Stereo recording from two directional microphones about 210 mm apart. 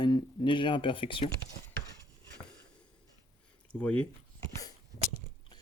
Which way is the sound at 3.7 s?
5° left (ahead or behind).